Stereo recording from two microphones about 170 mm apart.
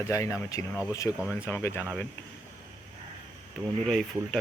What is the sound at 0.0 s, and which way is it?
Speech, 15° left (ahead or behind).